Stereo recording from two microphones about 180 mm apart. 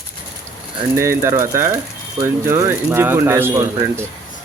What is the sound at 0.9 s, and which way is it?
Speech, 15° right (ahead or behind).